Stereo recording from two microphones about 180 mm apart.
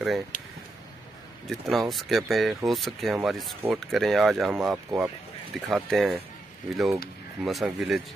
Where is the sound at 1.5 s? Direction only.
Centre (ahead or behind).